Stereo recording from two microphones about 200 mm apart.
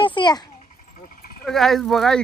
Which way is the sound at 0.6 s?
40° left (ahead or behind).